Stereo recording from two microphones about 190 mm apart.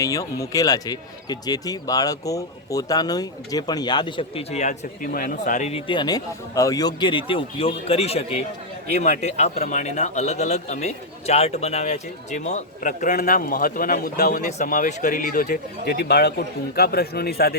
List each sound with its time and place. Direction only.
0.0 s speech: 20° left (ahead or behind); by 17.5 s 55° left (ahead or behind)